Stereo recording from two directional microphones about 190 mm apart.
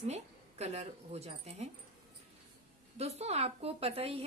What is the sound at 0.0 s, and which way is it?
Speech, 35° right (ahead or behind).